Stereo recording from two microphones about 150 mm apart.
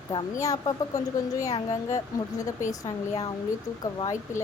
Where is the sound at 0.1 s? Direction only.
25° left (ahead or behind).